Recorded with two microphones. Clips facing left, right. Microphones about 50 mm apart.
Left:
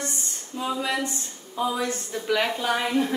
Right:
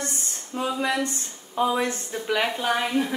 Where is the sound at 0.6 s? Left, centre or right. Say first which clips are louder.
Right 2 dB; right.